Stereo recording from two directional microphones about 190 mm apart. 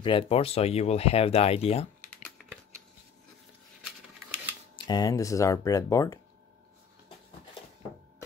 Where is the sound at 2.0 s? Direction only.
5° left (ahead or behind).